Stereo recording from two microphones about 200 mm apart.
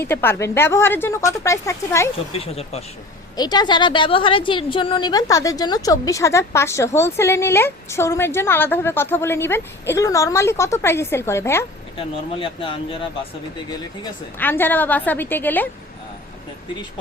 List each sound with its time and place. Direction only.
0.0 s a woman's voice: 10° left (ahead or behind)
2.1 s speech: 30° left (ahead or behind)
3.3 s a woman's voice: 20° left (ahead or behind)
11.9 s speech: 25° left (ahead or behind)
13.7 s a woman's voice: 15° left (ahead or behind)